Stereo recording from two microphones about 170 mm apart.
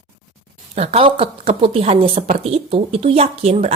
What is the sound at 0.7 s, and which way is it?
A woman's voice, 35° right (ahead or behind).